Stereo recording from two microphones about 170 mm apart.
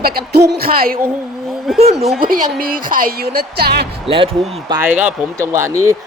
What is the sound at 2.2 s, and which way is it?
A man's voice, 60° right (ahead or behind).